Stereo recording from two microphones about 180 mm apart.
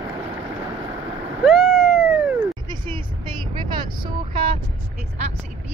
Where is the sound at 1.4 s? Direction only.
Centre (ahead or behind).